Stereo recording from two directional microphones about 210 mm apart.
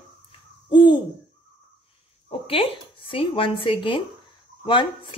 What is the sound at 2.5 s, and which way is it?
Speech, 25° left (ahead or behind).